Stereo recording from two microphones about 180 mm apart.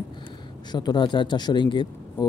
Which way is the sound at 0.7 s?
25° left (ahead or behind).